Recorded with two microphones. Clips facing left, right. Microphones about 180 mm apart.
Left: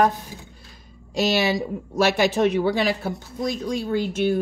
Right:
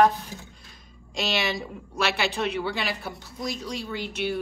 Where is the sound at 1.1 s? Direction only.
40° left (ahead or behind).